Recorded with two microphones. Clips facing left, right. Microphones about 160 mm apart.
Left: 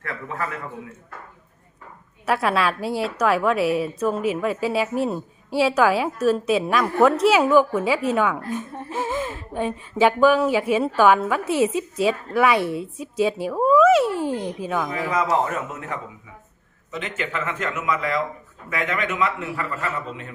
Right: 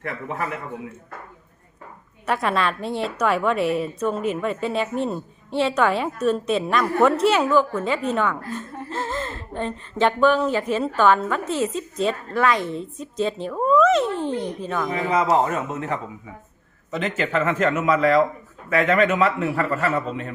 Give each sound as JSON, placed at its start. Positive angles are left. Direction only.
{"t": 0.0, "sound": "speech", "side_deg": -20}
{"t": 2.2, "sound": "a woman's voice", "side_deg": 5}
{"t": 14.8, "sound": "a man's voice", "side_deg": -25}